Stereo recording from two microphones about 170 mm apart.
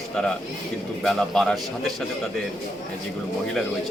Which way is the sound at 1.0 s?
Centre (ahead or behind).